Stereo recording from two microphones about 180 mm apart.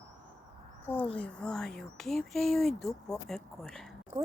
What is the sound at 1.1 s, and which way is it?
Speech, 5° left (ahead or behind).